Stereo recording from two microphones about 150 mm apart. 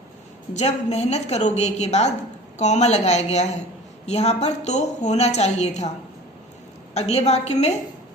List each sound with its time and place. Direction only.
0.5 s a woman's voice: 45° left (ahead or behind)
6.9 s a woman's voice: 45° left (ahead or behind)